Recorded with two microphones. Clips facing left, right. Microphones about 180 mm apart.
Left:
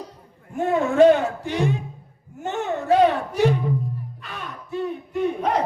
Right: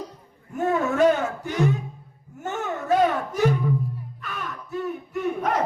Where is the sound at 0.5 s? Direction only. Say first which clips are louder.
Left 3 dB; 25° left (ahead or behind).